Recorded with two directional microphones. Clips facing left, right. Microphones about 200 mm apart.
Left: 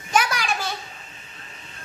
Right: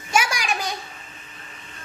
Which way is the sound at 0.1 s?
10° right (ahead or behind).